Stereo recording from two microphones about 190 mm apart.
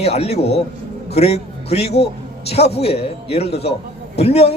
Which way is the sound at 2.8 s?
30° left (ahead or behind).